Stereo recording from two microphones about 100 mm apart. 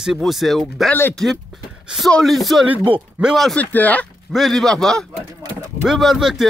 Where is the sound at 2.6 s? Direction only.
15° right (ahead or behind).